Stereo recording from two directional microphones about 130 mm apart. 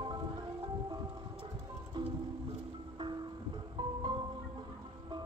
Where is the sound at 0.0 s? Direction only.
35° right (ahead or behind).